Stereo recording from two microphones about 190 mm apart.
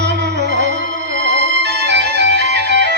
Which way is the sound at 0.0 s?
65° right (ahead or behind).